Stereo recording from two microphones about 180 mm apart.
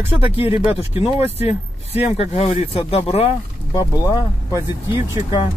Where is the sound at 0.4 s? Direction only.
35° left (ahead or behind).